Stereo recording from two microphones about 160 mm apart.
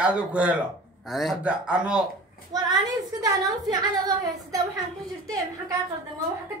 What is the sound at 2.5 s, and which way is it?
A woman's voice, 25° right (ahead or behind).